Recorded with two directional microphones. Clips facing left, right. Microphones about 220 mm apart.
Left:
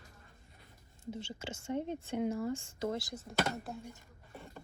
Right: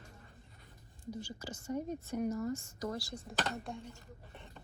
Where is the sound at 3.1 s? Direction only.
5° left (ahead or behind).